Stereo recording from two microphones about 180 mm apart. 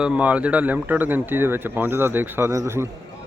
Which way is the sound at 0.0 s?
5° right (ahead or behind).